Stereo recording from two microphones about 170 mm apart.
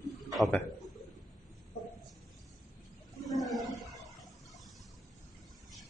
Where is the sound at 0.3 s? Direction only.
Centre (ahead or behind).